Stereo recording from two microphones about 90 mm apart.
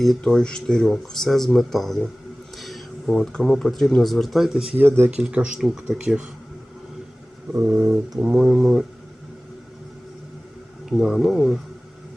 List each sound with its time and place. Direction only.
0.0 s speech: 5° left (ahead or behind)
4.8 s speech: 25° right (ahead or behind)
5.3 s speech: 15° right (ahead or behind)
5.5 s speech: 5° right (ahead or behind)
7.5 s a sound: 30° right (ahead or behind)
8.4 s speech: 10° right (ahead or behind)
10.8 s speech: 5° right (ahead or behind)